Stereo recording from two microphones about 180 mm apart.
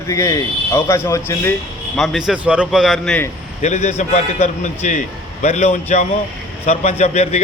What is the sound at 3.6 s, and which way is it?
A man's voice, 40° left (ahead or behind).